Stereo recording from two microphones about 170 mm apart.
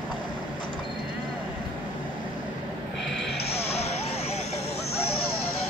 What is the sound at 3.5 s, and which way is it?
Vehicle, 35° left (ahead or behind).